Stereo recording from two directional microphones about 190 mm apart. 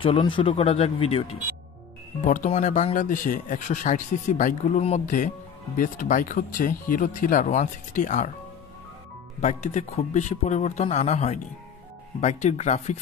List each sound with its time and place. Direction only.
0.0 s speech: 25° left (ahead or behind)
9.4 s speech: 40° left (ahead or behind)